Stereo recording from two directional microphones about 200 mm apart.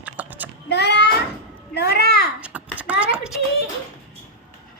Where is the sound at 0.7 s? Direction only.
55° left (ahead or behind).